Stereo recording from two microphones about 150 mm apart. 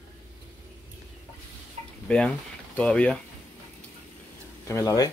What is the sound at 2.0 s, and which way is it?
Speech, 5° left (ahead or behind).